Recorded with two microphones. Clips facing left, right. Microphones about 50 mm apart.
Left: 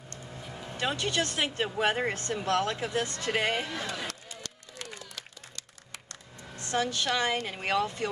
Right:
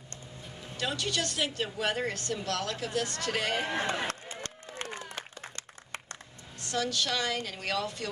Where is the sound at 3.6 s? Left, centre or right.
Right.